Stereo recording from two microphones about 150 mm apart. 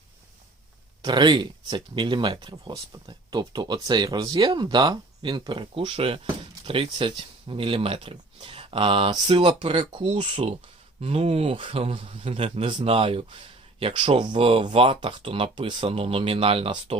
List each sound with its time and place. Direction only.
1.0 s speech: 30° right (ahead or behind)